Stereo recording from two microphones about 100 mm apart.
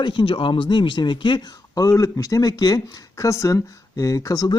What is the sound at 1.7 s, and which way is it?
Speech, 35° left (ahead or behind).